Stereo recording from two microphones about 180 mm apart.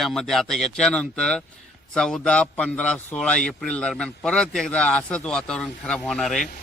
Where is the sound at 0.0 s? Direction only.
Centre (ahead or behind).